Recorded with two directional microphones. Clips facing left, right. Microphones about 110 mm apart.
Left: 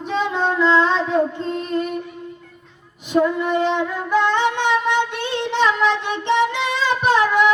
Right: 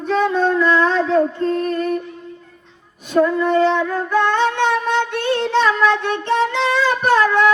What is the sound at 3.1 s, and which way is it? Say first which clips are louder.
Female singing: right 3 dB; 15° left (ahead or behind).